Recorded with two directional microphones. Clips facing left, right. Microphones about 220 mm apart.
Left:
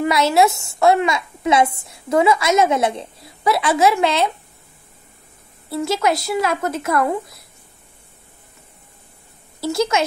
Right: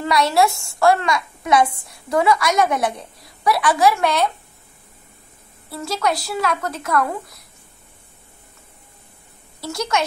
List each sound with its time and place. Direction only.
0.0 s a woman's voice: 20° left (ahead or behind)
5.8 s a woman's voice: 25° left (ahead or behind)
9.7 s a woman's voice: 25° left (ahead or behind)